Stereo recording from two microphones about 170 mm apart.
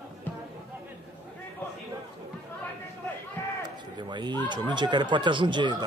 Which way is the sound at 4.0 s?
25° right (ahead or behind).